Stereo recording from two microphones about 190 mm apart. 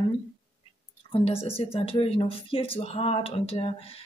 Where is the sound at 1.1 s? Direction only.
30° left (ahead or behind).